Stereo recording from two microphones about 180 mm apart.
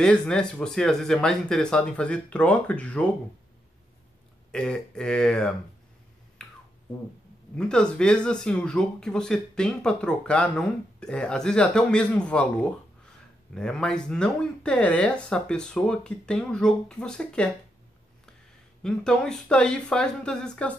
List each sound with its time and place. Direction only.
0.0 s speech: 5° left (ahead or behind)
4.5 s speech: 5° left (ahead or behind)
6.4 s finger snapping: 5° left (ahead or behind)
7.5 s speech: 5° left (ahead or behind)
18.8 s speech: 5° left (ahead or behind)